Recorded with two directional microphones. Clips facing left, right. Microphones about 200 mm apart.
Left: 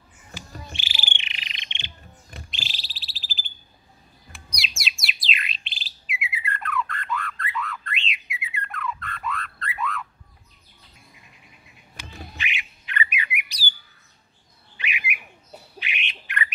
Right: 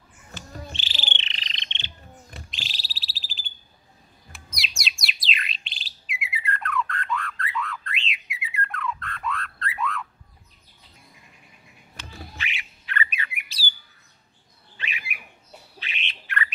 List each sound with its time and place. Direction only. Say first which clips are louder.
0.3 s bird: right 1 dB; 10° left (ahead or behind)
2.5 s a sound: left 1 dB; centre (ahead or behind)
4.3 s bird: left 1 dB; centre (ahead or behind)
12.0 s squawk: left 1 dB; 15° left (ahead or behind)
14.8 s bird: left 4 dB; 15° left (ahead or behind)
15.8 s squawk: left 3 dB; 15° left (ahead or behind)